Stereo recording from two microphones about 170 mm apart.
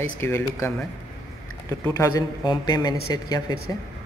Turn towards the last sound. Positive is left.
turn(degrees=25)  # may be behind; listen again after turning